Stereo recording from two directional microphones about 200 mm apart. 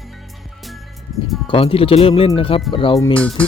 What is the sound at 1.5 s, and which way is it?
Speech, 25° left (ahead or behind).